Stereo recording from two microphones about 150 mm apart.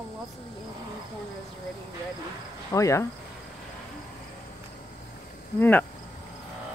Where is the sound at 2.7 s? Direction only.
20° left (ahead or behind).